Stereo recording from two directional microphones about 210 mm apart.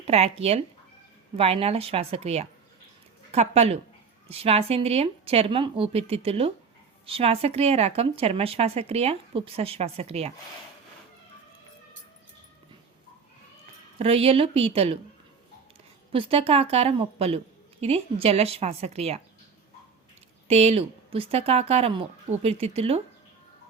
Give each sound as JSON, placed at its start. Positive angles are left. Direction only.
{"t": 0.0, "sound": "speech", "side_deg": -30}
{"t": 14.0, "sound": "speech", "side_deg": -30}
{"t": 16.1, "sound": "speech", "side_deg": -25}
{"t": 20.5, "sound": "speech", "side_deg": -30}